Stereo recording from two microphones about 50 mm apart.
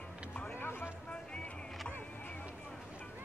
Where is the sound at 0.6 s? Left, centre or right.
Left.